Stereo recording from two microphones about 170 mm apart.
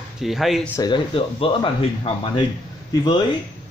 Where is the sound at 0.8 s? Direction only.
30° left (ahead or behind).